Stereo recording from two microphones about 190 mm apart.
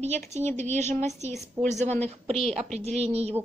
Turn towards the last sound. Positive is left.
turn(degrees=-35)  # may be behind; listen again after turning